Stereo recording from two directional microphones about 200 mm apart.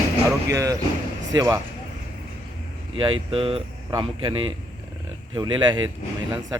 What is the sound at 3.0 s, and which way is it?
Speech, 25° right (ahead or behind).